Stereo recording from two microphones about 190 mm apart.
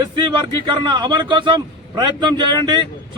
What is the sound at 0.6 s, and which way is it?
A man's voice, 25° right (ahead or behind).